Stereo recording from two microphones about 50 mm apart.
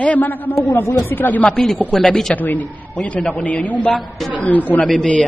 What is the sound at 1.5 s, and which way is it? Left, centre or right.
Speech, centre.